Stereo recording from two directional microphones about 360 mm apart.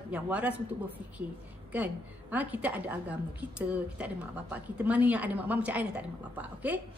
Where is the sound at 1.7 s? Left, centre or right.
Centre.